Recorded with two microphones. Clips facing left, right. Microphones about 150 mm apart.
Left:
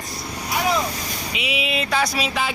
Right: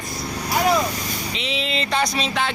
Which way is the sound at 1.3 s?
10° left (ahead or behind).